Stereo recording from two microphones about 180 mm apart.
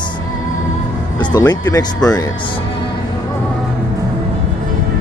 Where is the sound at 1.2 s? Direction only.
25° left (ahead or behind).